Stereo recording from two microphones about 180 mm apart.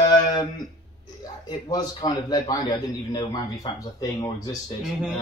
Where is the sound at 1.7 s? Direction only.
20° left (ahead or behind).